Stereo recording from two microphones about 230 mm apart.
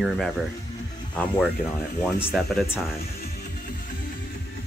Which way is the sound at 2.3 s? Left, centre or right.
Centre.